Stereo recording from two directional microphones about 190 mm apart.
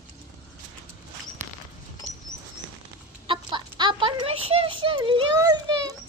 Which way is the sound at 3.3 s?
25° right (ahead or behind).